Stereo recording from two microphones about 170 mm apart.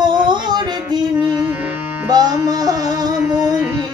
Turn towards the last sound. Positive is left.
turn(degrees=-25)  # may be behind; listen again after turning